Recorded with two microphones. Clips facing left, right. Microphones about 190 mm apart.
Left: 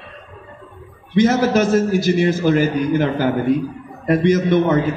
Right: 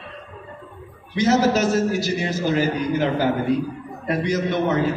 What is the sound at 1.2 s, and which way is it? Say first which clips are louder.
A man's voice: left 3 dB; 55° left (ahead or behind).